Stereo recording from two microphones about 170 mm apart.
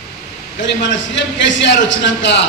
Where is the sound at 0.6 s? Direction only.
90° left.